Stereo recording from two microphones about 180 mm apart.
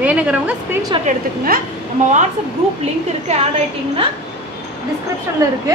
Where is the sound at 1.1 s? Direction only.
55° right (ahead or behind).